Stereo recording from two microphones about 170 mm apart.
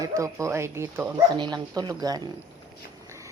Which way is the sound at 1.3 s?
25° right (ahead or behind).